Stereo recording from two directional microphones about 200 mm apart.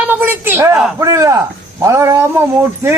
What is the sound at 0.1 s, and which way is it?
A woman's voice, 10° right (ahead or behind).